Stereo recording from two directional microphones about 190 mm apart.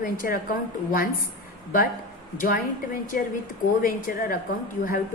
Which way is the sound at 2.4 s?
45° left (ahead or behind).